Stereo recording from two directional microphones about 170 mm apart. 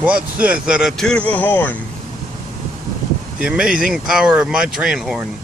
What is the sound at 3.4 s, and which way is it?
Speech, 5° right (ahead or behind).